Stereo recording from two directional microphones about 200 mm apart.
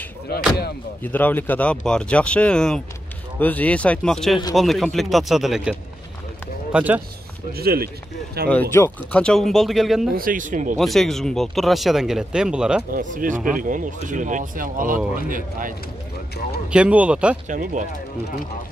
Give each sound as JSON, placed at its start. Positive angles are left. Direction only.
{"t": 1.0, "sound": "speech", "side_deg": 10}
{"t": 7.5, "sound": "speech", "side_deg": -50}
{"t": 8.5, "sound": "speech", "side_deg": 10}
{"t": 10.1, "sound": "speech", "side_deg": -45}
{"t": 10.8, "sound": "speech", "side_deg": 0}
{"t": 12.9, "sound": "speech", "side_deg": -40}
{"t": 16.7, "sound": "speech", "side_deg": -5}
{"t": 17.5, "sound": "speech", "side_deg": -40}